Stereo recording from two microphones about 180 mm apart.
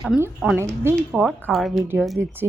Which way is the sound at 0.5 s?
15° right (ahead or behind).